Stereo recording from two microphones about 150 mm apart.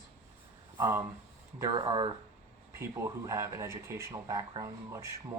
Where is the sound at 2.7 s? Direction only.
20° right (ahead or behind).